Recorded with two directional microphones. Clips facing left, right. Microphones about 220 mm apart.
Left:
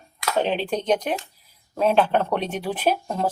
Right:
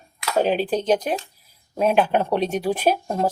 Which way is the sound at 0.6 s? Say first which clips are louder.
Right 2 dB; 30° right (ahead or behind).